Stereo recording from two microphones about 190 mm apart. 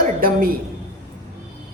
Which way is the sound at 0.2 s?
50° right (ahead or behind).